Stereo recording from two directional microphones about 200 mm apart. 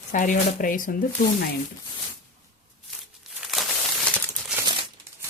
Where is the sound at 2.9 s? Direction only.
Centre (ahead or behind).